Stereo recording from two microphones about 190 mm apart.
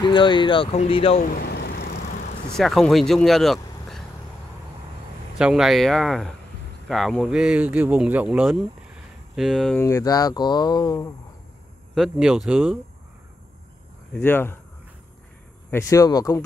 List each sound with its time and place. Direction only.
0.0 s speech: 25° left (ahead or behind)
1.2 s vehicle: 55° left (ahead or behind)
2.5 s speech: centre (ahead or behind)
5.4 s speech: centre (ahead or behind)
9.8 s speech: 15° left (ahead or behind)
11.9 s speech: centre (ahead or behind)
14.1 s speech: 10° left (ahead or behind)
15.7 s speech: 15° left (ahead or behind)